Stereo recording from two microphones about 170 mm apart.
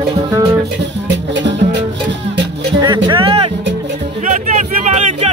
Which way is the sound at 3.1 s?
30° right (ahead or behind).